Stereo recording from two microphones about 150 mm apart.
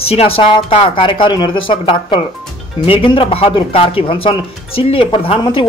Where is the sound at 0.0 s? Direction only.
40° left (ahead or behind).